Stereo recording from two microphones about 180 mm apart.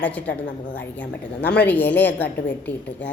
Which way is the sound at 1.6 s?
10° left (ahead or behind).